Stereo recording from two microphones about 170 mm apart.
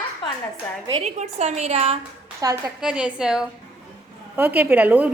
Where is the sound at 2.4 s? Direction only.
20° right (ahead or behind).